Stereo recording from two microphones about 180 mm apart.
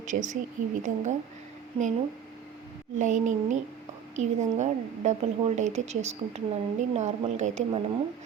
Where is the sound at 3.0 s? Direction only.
40° right (ahead or behind).